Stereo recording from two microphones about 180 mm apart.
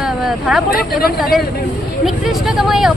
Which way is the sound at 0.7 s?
55° left (ahead or behind).